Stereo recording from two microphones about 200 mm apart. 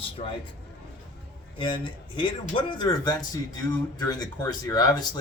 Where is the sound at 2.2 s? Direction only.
25° left (ahead or behind).